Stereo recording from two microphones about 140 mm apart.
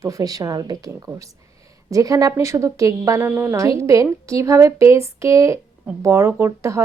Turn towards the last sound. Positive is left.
turn(degrees=-20)  # may be behind; listen again after turning